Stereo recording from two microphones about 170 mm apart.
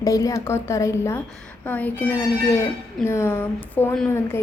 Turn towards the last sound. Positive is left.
turn(degrees=15)  # may be behind; listen again after turning